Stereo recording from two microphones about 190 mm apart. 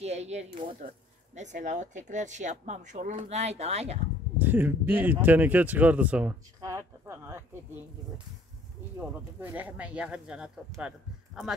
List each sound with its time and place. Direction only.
0.0 s speech: 35° right (ahead or behind)
4.4 s speech: 10° right (ahead or behind)
9.4 s speech: 10° right (ahead or behind)